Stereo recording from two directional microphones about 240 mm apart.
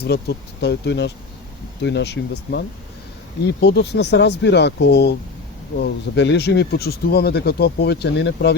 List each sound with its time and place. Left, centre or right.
0.0 s speech: left